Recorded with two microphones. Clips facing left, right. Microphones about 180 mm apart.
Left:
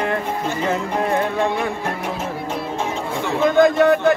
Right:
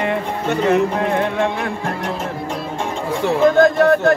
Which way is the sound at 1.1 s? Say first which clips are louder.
Right 1 dB; 5° left (ahead or behind).